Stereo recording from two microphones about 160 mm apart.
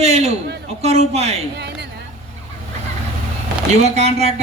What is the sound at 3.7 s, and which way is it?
Speech, 45° right (ahead or behind).